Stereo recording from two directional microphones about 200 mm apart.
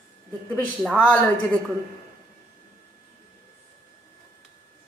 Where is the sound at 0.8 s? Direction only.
5° left (ahead or behind).